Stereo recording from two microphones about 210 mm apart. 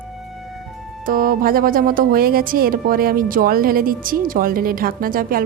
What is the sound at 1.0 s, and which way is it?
Speech, 40° right (ahead or behind).